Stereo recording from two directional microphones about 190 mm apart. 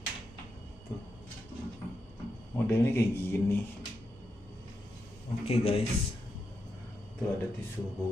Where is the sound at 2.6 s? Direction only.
10° left (ahead or behind).